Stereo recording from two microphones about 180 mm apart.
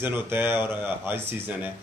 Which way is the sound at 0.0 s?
10° right (ahead or behind).